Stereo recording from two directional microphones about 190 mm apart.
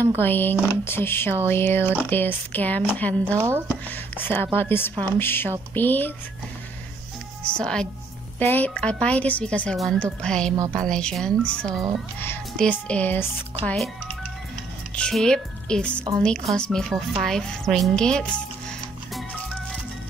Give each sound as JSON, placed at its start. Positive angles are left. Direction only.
{"t": 0.2, "sound": "speech", "side_deg": 10}
{"t": 3.3, "sound": "a woman's voice", "side_deg": -15}
{"t": 3.6, "sound": "speech", "side_deg": 10}
{"t": 7.4, "sound": "speech", "side_deg": 5}
{"t": 10.5, "sound": "a woman's voice", "side_deg": -15}
{"t": 10.8, "sound": "speech", "side_deg": 5}
{"t": 15.0, "sound": "speech", "side_deg": 5}